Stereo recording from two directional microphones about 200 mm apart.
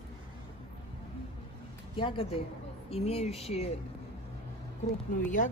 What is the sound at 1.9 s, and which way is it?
A woman's voice, 25° left (ahead or behind).